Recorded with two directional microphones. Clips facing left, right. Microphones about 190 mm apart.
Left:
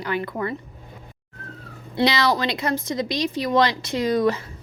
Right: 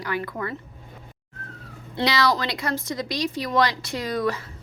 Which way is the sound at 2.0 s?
20° left (ahead or behind).